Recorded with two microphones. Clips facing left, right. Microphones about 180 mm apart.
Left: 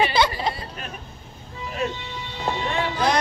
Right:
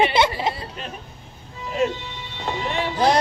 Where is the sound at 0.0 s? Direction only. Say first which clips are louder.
Right 2 dB; 25° right (ahead or behind).